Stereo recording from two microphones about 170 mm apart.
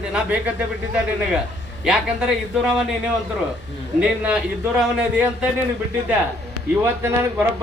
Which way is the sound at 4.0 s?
5° right (ahead or behind).